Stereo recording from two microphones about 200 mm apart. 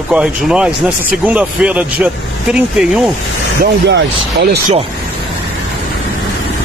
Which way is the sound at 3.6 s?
55° right (ahead or behind).